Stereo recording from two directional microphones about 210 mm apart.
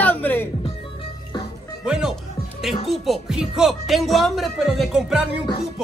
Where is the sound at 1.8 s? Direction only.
5° right (ahead or behind).